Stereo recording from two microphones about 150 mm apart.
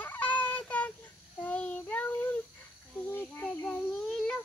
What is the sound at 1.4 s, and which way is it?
Child singing, 10° left (ahead or behind).